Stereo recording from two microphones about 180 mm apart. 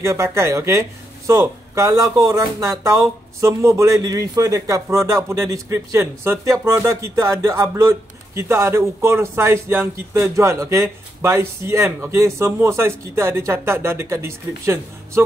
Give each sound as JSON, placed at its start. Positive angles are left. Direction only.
{"t": 0.0, "sound": "a man's voice", "side_deg": -15}